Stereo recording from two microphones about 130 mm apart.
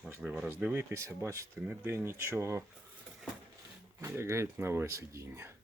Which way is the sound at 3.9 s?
20° right (ahead or behind).